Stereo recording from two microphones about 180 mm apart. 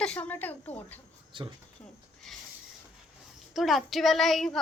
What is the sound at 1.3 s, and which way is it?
Speech, 30° right (ahead or behind).